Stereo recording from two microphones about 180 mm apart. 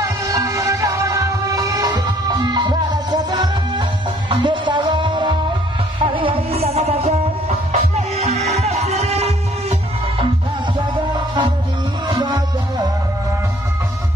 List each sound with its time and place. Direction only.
0.0 s music: 20° right (ahead or behind); by 10.2 s 35° right (ahead or behind)
10.8 s music: 25° right (ahead or behind)